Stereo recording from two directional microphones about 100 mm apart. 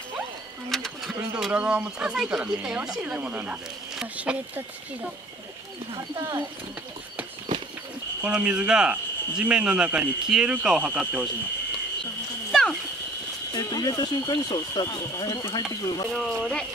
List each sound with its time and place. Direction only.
0.7 s bird: centre (ahead or behind)
1.3 s speech: 10° right (ahead or behind)
8.2 s speech: 15° right (ahead or behind)
12.4 s a sound: centre (ahead or behind)
13.5 s speech: 40° left (ahead or behind)
14.7 s speech: 35° left (ahead or behind)
16.1 s speech: 5° left (ahead or behind)